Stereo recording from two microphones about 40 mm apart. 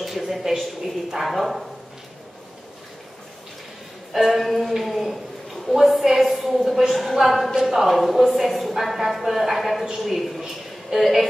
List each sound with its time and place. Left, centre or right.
0.0 s a man's voice: centre
4.1 s a woman's voice: centre